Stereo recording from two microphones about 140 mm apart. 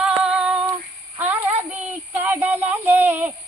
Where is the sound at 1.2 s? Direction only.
15° right (ahead or behind).